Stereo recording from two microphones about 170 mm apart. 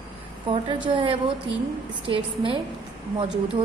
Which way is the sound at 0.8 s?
30° right (ahead or behind).